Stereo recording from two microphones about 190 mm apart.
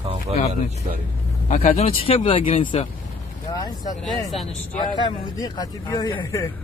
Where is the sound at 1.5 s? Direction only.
35° left (ahead or behind); by 6.5 s 15° left (ahead or behind).